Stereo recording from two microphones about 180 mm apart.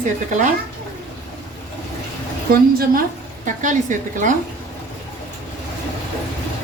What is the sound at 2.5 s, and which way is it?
A woman's voice, 55° right (ahead or behind).